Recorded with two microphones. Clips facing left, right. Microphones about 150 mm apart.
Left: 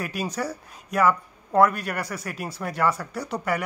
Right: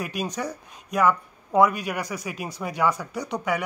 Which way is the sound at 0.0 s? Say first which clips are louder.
Even; 5° left (ahead or behind).